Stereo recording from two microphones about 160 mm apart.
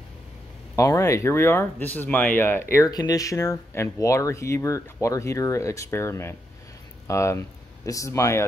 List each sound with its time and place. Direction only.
0.7 s speech: 20° left (ahead or behind)